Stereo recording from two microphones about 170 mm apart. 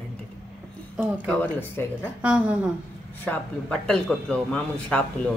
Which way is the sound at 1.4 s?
10° left (ahead or behind).